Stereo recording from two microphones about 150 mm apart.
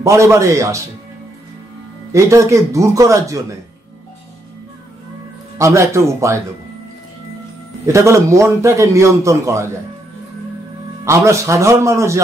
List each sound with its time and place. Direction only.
0.0 s a man's voice: 20° right (ahead or behind)
2.1 s a man's voice: 20° right (ahead or behind)
5.6 s a man's voice: 20° right (ahead or behind)
7.8 s a man's voice: 20° right (ahead or behind)
11.1 s a man's voice: 20° right (ahead or behind)